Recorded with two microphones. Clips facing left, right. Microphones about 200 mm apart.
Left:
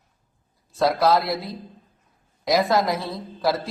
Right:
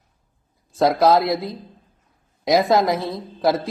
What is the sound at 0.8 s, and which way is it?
Speech, 20° right (ahead or behind).